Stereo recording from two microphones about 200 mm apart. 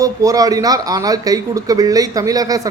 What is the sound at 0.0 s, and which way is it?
Speech, 15° right (ahead or behind).